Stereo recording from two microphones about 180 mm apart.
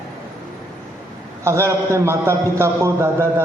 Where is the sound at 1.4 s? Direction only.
15° right (ahead or behind).